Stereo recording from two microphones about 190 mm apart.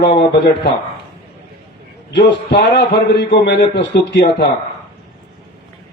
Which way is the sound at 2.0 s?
65° left (ahead or behind).